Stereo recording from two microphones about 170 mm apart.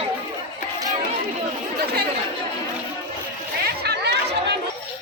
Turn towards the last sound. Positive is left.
turn(degrees=-70)  # may be behind; listen again after turning